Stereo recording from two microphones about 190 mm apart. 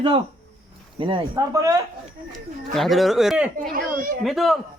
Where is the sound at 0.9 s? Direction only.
25° right (ahead or behind).